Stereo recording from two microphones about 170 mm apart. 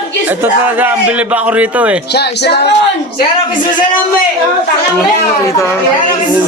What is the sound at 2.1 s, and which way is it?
Speech, 75° left (ahead or behind).